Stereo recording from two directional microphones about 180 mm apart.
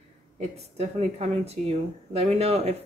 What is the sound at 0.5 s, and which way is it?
A woman's voice, 35° right (ahead or behind).